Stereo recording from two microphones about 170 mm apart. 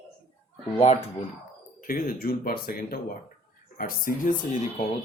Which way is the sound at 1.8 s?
55° left (ahead or behind).